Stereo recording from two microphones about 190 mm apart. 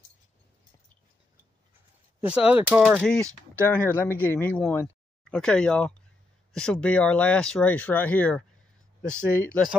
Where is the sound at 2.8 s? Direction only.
Centre (ahead or behind).